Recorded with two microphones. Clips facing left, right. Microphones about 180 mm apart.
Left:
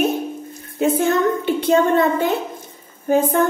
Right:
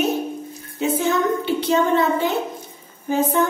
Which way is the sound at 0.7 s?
55° left (ahead or behind).